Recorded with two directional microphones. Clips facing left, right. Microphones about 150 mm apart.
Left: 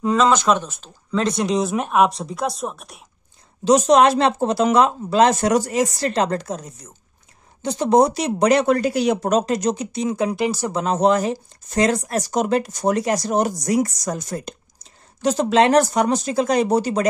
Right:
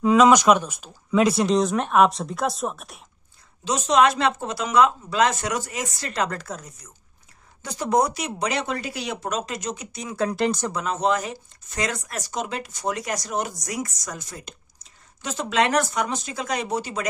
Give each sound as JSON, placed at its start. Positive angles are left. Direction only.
{"t": 0.0, "sound": "speech", "side_deg": -10}
{"t": 3.6, "sound": "speech", "side_deg": 40}
{"t": 8.4, "sound": "speech", "side_deg": 45}
{"t": 10.1, "sound": "speech", "side_deg": 10}
{"t": 10.7, "sound": "speech", "side_deg": 30}
{"t": 13.0, "sound": "speech", "side_deg": 30}